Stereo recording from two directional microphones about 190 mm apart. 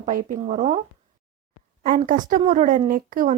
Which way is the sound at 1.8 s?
45° right (ahead or behind).